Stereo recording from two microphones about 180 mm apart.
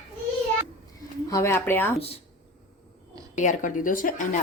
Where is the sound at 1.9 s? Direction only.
35° left (ahead or behind).